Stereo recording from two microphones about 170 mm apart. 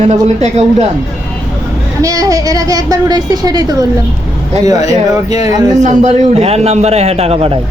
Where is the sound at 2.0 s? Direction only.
20° right (ahead or behind).